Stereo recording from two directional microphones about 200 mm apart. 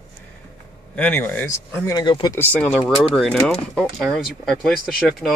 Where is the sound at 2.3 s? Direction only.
10° left (ahead or behind).